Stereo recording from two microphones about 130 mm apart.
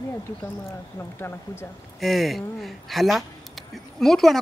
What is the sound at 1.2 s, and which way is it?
Speech, 20° left (ahead or behind).